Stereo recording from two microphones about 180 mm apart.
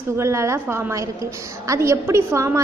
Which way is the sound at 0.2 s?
15° right (ahead or behind).